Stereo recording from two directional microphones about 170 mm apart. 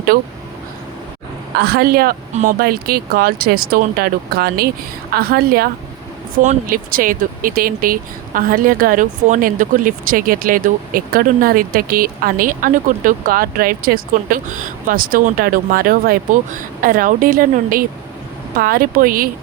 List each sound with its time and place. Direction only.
0.1 s speech: 65° right (ahead or behind)
1.5 s speech: 70° right (ahead or behind)
2.3 s speech: 50° right (ahead or behind)
6.3 s speech: 50° right (ahead or behind)